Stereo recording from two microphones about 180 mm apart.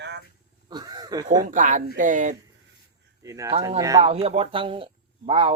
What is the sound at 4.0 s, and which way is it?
Speech, 35° right (ahead or behind).